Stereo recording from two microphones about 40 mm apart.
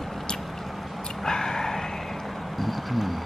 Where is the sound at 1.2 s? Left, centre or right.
Centre.